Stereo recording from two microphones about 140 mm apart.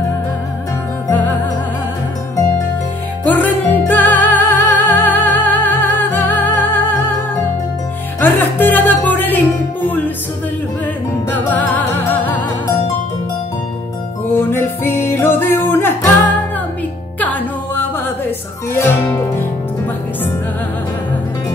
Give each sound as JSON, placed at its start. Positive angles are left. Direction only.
{"t": 3.3, "sound": "music", "side_deg": 10}
{"t": 8.2, "sound": "music", "side_deg": 15}
{"t": 11.3, "sound": "music", "side_deg": 10}
{"t": 14.4, "sound": "music", "side_deg": 15}